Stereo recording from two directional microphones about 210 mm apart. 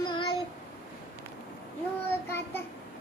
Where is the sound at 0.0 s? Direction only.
25° left (ahead or behind).